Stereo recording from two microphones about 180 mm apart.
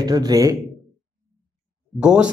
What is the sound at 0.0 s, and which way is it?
Speech, 20° right (ahead or behind).